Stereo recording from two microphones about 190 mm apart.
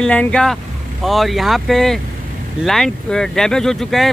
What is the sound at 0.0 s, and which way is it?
Speech, 5° left (ahead or behind).